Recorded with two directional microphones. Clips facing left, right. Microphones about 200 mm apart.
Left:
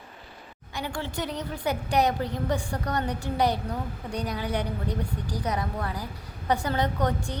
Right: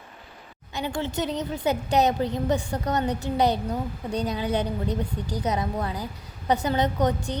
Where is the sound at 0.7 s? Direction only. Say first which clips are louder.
Right 4 dB; 20° right (ahead or behind).